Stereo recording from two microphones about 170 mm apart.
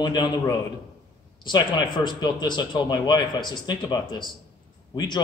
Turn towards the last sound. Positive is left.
turn(degrees=25)  # may be behind; listen again after turning